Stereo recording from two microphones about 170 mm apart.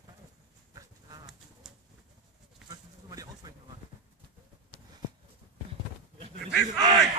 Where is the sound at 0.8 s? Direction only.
20° right (ahead or behind).